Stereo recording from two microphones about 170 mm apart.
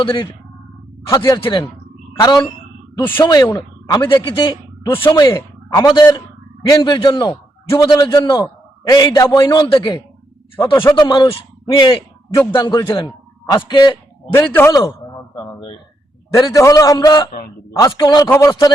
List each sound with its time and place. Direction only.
0.0 s a man's voice: 30° left (ahead or behind)
1.1 s a man's voice: 20° left (ahead or behind)
11.9 s a man's voice: 20° left (ahead or behind)
16.3 s a man's voice: 20° left (ahead or behind)